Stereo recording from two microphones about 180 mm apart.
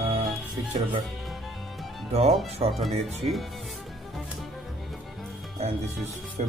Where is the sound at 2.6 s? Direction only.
35° right (ahead or behind).